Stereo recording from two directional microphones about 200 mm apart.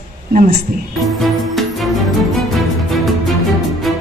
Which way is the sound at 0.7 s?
45° right (ahead or behind).